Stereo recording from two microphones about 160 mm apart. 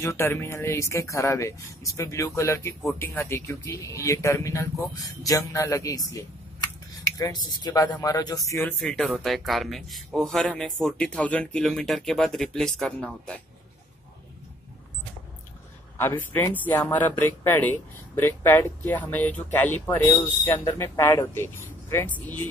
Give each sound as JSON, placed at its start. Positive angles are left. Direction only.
{"t": 0.0, "sound": "speech", "side_deg": 15}
{"t": 8.7, "sound": "speech", "side_deg": 5}
{"t": 16.0, "sound": "speech", "side_deg": 15}